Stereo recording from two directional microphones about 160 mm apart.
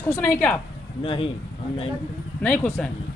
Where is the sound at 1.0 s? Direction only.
35° left (ahead or behind).